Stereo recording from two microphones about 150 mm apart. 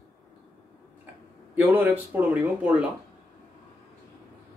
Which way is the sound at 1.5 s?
10° right (ahead or behind).